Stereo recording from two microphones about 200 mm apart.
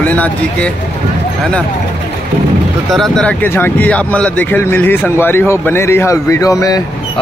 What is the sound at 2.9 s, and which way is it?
Speech, 5° left (ahead or behind).